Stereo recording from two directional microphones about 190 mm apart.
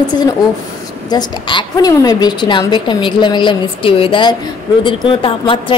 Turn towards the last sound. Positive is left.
turn(degrees=25)  # may be behind; listen again after turning